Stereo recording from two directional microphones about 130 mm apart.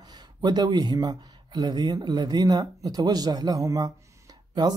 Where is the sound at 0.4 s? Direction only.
35° right (ahead or behind).